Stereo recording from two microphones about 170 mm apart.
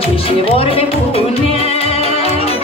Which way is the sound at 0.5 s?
35° left (ahead or behind).